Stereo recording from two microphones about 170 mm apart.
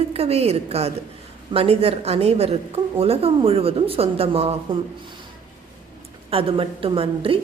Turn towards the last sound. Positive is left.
turn(degrees=-30)  # may be behind; listen again after turning